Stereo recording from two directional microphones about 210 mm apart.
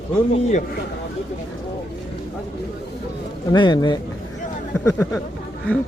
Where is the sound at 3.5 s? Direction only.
20° left (ahead or behind).